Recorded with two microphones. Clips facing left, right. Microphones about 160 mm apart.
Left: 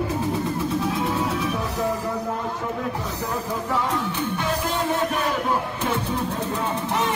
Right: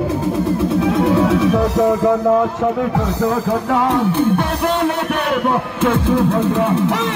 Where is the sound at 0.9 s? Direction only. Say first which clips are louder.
Right 10 dB; 80° right.